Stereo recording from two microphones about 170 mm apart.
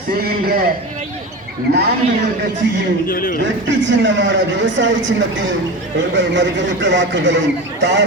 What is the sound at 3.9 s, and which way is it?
A man's voice, 90° right.